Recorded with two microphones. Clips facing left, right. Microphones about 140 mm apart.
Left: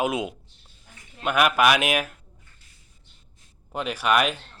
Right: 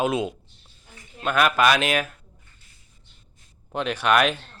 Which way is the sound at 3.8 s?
5° left (ahead or behind).